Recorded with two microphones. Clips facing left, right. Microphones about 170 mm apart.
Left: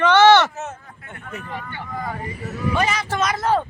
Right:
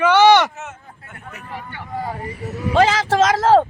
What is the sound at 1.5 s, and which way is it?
Speech, 10° right (ahead or behind).